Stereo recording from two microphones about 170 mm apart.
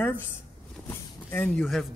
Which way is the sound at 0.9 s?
15° left (ahead or behind).